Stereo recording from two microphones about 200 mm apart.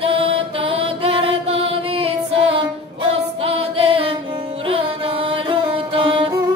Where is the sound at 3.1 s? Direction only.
30° right (ahead or behind).